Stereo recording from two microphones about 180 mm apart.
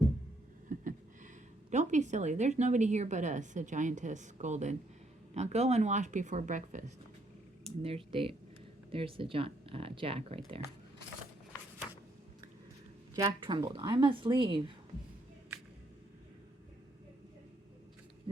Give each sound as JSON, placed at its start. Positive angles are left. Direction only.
{"t": 0.7, "sound": "a sound", "side_deg": -45}
{"t": 1.7, "sound": "a woman's voice", "side_deg": -40}
{"t": 13.1, "sound": "speech", "side_deg": -25}